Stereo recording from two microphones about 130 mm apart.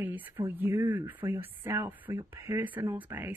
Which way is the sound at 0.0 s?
15° right (ahead or behind).